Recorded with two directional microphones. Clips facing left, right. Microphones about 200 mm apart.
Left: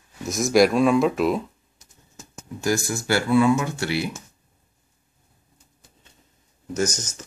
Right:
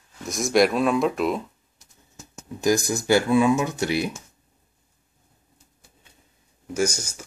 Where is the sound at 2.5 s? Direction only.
15° right (ahead or behind).